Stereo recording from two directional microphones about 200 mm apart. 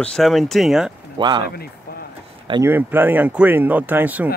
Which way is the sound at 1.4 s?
50° left (ahead or behind).